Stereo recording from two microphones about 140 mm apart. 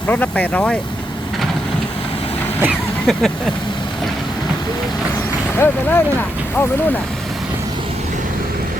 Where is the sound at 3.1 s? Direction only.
5° left (ahead or behind).